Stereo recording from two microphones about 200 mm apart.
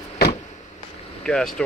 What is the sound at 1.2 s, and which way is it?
Speech, 5° left (ahead or behind).